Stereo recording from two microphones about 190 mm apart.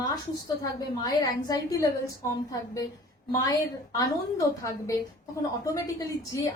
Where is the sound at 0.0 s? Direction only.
20° left (ahead or behind).